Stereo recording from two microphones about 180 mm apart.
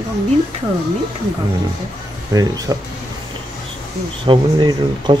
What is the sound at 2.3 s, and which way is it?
Speech, 20° right (ahead or behind).